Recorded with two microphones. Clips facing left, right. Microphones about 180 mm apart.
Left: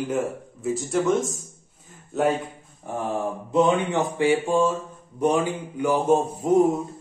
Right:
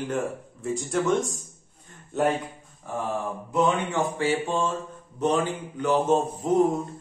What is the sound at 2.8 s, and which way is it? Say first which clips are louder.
Speech: left 2 dB; 20° left (ahead or behind).